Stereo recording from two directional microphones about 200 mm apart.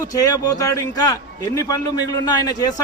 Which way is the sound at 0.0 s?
20° left (ahead or behind).